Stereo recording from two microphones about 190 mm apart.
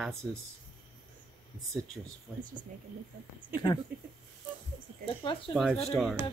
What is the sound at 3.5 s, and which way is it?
Speech, 20° left (ahead or behind).